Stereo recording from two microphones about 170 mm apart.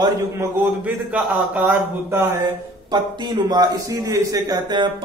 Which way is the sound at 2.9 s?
25° right (ahead or behind).